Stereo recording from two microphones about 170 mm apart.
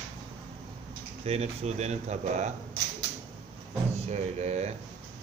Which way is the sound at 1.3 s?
40° right (ahead or behind).